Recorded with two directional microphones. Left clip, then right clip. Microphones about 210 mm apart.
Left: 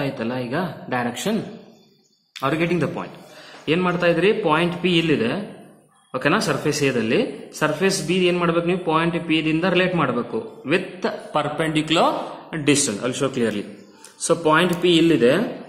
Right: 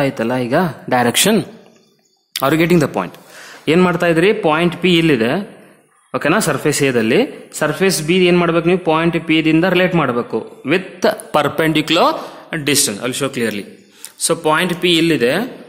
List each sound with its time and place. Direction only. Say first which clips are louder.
0.0 s a man's voice: right 8 dB; 50° right (ahead or behind); by 15.4 s 30° right (ahead or behind)